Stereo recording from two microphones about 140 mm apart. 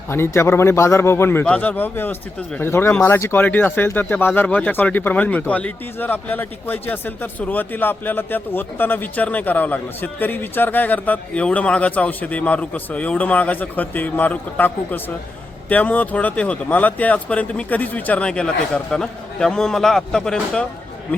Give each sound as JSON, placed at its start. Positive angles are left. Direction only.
{"t": 0.1, "sound": "speech", "side_deg": 20}